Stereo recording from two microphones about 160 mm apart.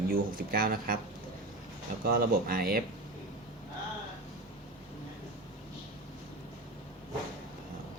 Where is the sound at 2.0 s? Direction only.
70° right (ahead or behind).